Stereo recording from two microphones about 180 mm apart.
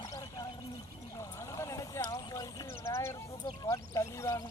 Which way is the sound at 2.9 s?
15° left (ahead or behind).